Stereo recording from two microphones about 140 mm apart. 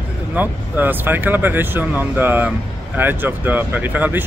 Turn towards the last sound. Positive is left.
turn(degrees=-15)  # may be behind; listen again after turning